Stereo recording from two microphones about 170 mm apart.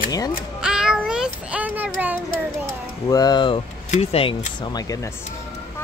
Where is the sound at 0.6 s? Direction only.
5° right (ahead or behind).